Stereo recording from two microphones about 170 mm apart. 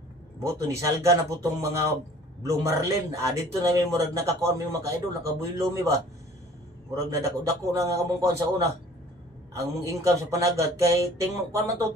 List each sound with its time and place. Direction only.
0.4 s speech: 15° right (ahead or behind)
7.2 s a man's voice: 20° right (ahead or behind)